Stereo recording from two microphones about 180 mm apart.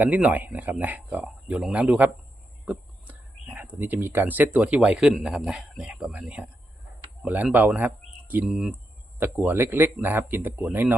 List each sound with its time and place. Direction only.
0.0 s speech: 10° right (ahead or behind)